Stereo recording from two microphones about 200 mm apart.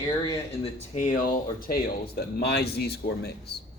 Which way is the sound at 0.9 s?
35° left (ahead or behind).